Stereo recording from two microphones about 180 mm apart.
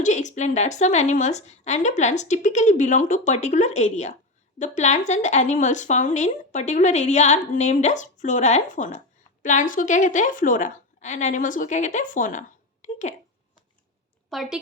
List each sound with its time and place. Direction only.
0.0 s a woman's voice: 40° left (ahead or behind)
14.3 s a woman's voice: centre (ahead or behind)